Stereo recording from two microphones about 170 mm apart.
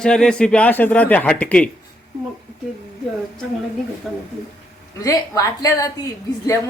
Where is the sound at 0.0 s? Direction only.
5° left (ahead or behind).